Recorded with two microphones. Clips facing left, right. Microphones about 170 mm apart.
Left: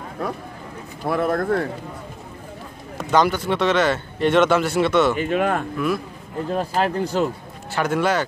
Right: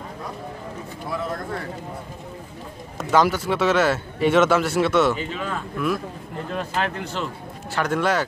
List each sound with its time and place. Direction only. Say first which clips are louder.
0.2 s speech: left 7 dB; 65° left (ahead or behind)
3.0 s a man's voice: left 1 dB; 5° right (ahead or behind)
5.2 s speech: left 8 dB; 55° left (ahead or behind)
6.5 s speech: left 5 dB; 35° left (ahead or behind)
7.7 s a man's voice: left 1 dB; centre (ahead or behind)